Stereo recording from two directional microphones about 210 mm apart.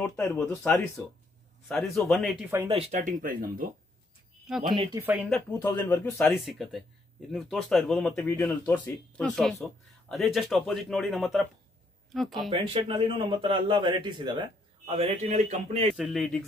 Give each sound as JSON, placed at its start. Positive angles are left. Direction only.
{"t": 0.0, "sound": "speech", "side_deg": 10}
{"t": 1.7, "sound": "speech", "side_deg": 0}
{"t": 2.7, "sound": "speech", "side_deg": -30}
{"t": 4.6, "sound": "a man's voice", "side_deg": -20}
{"t": 5.0, "sound": "speech", "side_deg": -10}
{"t": 5.3, "sound": "speech", "side_deg": 10}
{"t": 12.4, "sound": "a man's voice", "side_deg": -25}
{"t": 16.0, "sound": "speech", "side_deg": 0}